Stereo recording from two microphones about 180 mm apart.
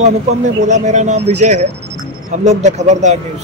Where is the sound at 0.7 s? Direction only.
40° right (ahead or behind).